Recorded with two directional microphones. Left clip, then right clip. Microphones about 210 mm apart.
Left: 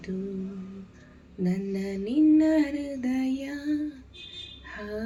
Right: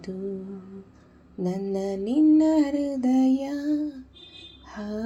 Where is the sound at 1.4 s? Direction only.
40° right (ahead or behind).